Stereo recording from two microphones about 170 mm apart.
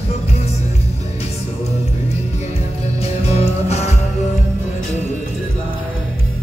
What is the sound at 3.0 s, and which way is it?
Music, 40° left (ahead or behind).